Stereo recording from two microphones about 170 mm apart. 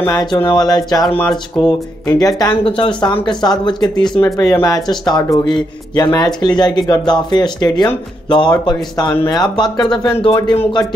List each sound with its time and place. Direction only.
0.0 s speech: 20° left (ahead or behind)
1.0 s speech: 10° left (ahead or behind)
1.3 s speech: 25° left (ahead or behind)
9.1 s speech: 15° left (ahead or behind)
9.4 s speech: 25° left (ahead or behind)